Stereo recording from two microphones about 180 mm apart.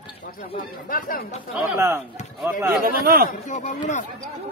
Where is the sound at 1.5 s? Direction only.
10° right (ahead or behind).